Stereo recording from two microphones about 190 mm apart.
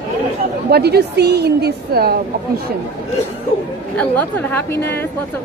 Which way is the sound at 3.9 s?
10° left (ahead or behind).